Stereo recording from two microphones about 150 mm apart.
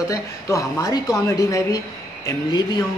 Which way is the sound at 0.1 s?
20° left (ahead or behind).